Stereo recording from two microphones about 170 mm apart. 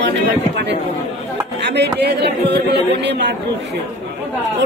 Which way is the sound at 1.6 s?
80° right.